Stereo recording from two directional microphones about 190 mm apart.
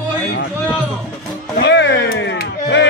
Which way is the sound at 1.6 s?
70° left (ahead or behind).